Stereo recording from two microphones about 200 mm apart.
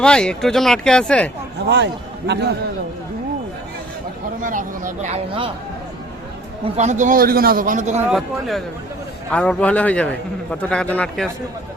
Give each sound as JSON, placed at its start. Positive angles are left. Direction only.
{"t": 0.0, "sound": "speech", "side_deg": 5}
{"t": 1.6, "sound": "a man's voice", "side_deg": -60}
{"t": 4.4, "sound": "a man's voice", "side_deg": -40}
{"t": 6.7, "sound": "a man's voice", "side_deg": -35}
{"t": 8.1, "sound": "a man's voice", "side_deg": 0}